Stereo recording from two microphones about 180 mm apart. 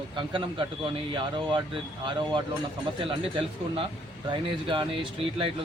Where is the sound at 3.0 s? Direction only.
30° right (ahead or behind).